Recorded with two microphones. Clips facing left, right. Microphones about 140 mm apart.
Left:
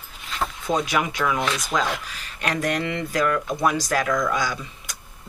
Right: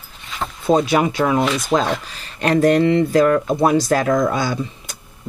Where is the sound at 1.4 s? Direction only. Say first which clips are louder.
Right 6 dB; centre (ahead or behind).